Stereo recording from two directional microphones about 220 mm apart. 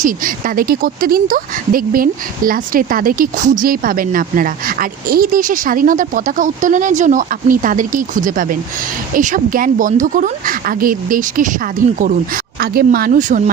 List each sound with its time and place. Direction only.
0.0 s speech: 40° right (ahead or behind)